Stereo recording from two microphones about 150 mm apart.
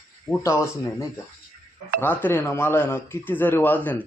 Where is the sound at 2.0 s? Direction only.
15° left (ahead or behind).